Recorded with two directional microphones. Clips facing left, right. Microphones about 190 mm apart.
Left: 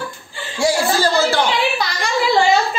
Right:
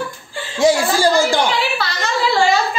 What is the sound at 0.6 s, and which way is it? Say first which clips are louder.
Speech: right 3 dB; 15° right (ahead or behind).